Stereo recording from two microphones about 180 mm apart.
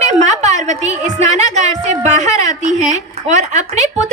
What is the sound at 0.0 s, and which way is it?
A woman's voice, 40° right (ahead or behind).